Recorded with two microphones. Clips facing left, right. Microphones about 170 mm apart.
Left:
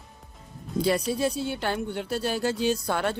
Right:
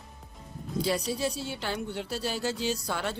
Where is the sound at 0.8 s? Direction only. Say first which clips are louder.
Left 5 dB; 55° left (ahead or behind).